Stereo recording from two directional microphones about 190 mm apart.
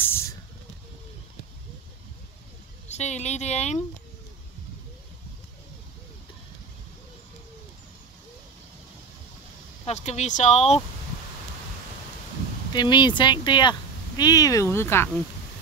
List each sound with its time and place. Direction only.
0.0 s spray: 10° left (ahead or behind)
2.9 s speech: 35° left (ahead or behind)
9.8 s speech: 35° left (ahead or behind)
12.7 s speech: 25° left (ahead or behind)